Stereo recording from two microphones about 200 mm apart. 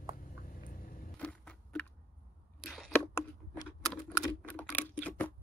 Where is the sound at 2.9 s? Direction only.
10° left (ahead or behind).